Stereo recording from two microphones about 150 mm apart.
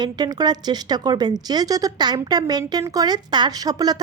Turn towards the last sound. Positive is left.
turn(degrees=-25)  # may be behind; listen again after turning